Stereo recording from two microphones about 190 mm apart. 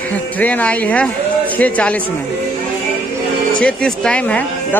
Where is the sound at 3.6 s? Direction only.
5° left (ahead or behind).